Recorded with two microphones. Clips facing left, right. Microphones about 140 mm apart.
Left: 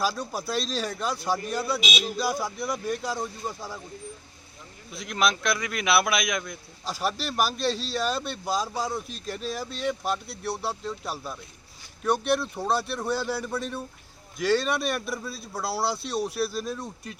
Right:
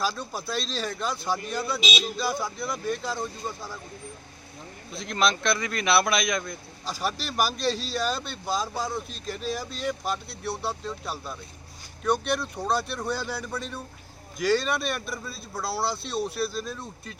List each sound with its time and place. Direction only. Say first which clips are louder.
0.0 s speech: left 2 dB; 5° left (ahead or behind)
1.8 s speech: right 1 dB; 30° right (ahead or behind)
2.4 s speech: left 1 dB; 10° left (ahead or behind)
4.9 s speech: right 1 dB; 5° left (ahead or behind)